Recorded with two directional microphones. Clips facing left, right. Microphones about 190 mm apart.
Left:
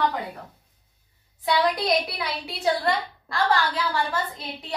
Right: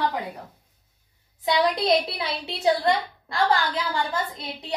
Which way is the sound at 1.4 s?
25° right (ahead or behind).